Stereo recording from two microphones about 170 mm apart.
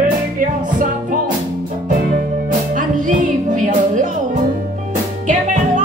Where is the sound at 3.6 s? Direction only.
45° right (ahead or behind).